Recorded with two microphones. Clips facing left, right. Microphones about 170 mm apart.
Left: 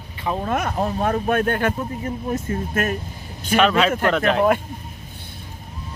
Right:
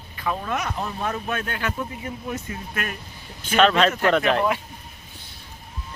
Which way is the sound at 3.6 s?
5° left (ahead or behind).